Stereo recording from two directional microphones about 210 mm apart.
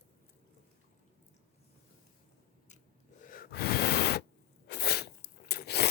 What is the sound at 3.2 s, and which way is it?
Gasp, 40° left (ahead or behind).